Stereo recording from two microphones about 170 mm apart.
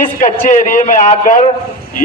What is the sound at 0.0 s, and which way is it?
A man's voice, 50° left (ahead or behind).